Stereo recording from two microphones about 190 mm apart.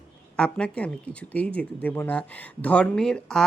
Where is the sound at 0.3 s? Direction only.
5° left (ahead or behind).